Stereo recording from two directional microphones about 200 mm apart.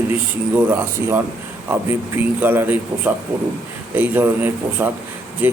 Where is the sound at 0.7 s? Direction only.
10° right (ahead or behind).